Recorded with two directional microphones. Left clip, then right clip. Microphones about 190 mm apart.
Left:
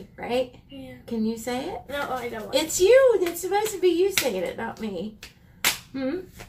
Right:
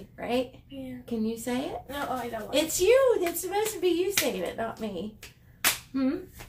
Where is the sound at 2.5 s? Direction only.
20° right (ahead or behind).